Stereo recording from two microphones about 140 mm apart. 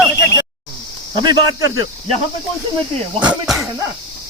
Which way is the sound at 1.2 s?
30° right (ahead or behind).